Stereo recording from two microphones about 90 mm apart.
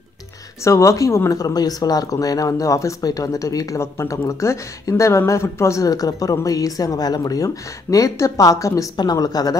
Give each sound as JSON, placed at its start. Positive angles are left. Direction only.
{"t": 0.7, "sound": "speech", "side_deg": 35}
{"t": 1.4, "sound": "speech", "side_deg": 45}
{"t": 8.9, "sound": "speech", "side_deg": 50}